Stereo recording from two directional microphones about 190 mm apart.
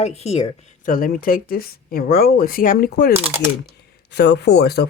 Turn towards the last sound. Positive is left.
turn(degrees=60)  # may be behind; listen again after turning